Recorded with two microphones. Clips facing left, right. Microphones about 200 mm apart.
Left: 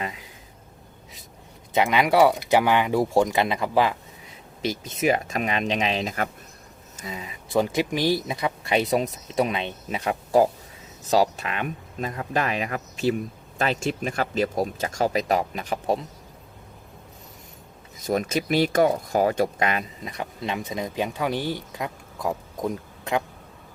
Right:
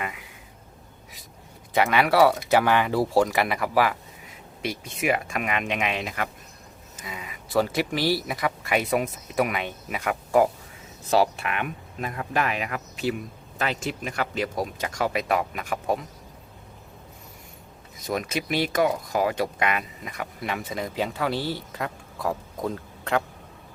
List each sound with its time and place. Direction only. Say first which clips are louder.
0.0 s a sound: left 1 dB; 30° left (ahead or behind)
1.7 s speech: left 1 dB; 15° left (ahead or behind)
5.0 s speech: left 3 dB; 35° left (ahead or behind)
7.5 s speech: left 1 dB; 15° left (ahead or behind)
11.1 s speech: left 1 dB; 20° left (ahead or behind); by 13.1 s 40° left (ahead or behind)
13.7 s speech: left 4 dB; 30° left (ahead or behind)
14.2 s speech: left 3 dB; 45° left (ahead or behind)
18.3 s speech: left 3 dB; 40° left (ahead or behind)
20.5 s speech: left 1 dB; 20° left (ahead or behind)